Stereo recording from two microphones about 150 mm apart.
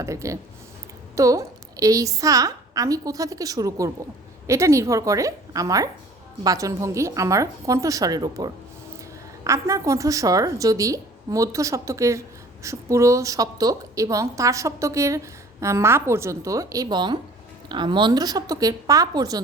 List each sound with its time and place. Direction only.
0.0 s a woman's voice: 20° right (ahead or behind)